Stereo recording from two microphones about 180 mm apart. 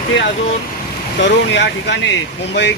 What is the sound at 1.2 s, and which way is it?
Speech, 75° left (ahead or behind).